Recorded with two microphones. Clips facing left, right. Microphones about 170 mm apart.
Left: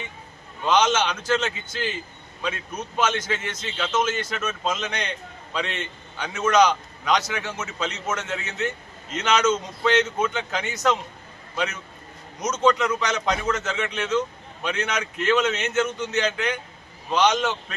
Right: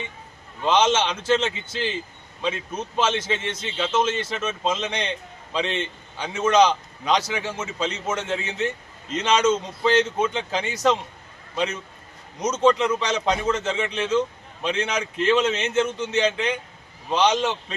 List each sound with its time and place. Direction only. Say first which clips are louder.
0.6 s a man's voice: right 1 dB; 30° right (ahead or behind)